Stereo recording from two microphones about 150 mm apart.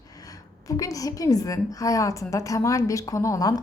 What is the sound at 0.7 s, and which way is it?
A woman's voice, 25° left (ahead or behind).